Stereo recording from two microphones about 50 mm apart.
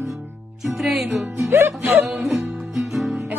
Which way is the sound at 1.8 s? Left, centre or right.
Right.